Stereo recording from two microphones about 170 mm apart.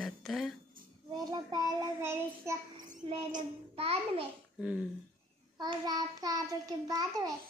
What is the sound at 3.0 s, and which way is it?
Child singing, 30° right (ahead or behind).